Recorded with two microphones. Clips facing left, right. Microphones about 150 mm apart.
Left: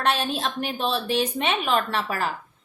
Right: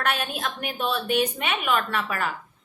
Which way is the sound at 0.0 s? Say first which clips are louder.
Left 3 dB; 30° left (ahead or behind).